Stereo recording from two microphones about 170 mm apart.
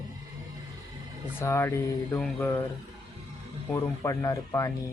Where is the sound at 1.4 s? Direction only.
15° left (ahead or behind).